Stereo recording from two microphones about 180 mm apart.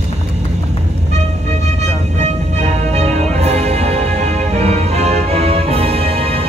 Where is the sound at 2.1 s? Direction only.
40° right (ahead or behind).